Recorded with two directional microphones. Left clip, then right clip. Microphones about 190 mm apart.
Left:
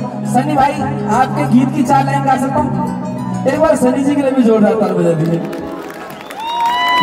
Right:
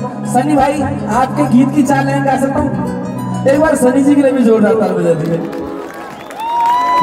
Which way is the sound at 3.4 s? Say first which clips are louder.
Right 2 dB; 35° right (ahead or behind).